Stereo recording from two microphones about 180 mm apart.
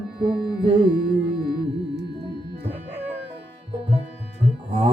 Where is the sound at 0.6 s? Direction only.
30° right (ahead or behind).